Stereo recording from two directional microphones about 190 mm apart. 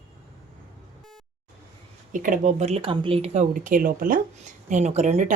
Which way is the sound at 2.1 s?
45° right (ahead or behind).